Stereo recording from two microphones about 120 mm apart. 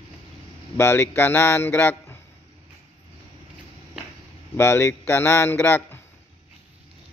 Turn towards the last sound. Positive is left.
turn(degrees=15)  # may be behind; listen again after turning